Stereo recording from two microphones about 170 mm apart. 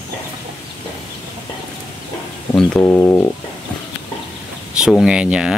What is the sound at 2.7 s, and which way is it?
Speech, 15° left (ahead or behind).